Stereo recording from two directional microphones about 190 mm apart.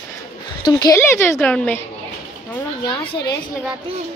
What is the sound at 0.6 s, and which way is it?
A woman's voice, 15° left (ahead or behind).